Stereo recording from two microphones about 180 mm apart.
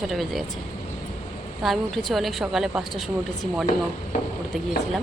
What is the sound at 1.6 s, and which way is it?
A woman's voice, centre (ahead or behind).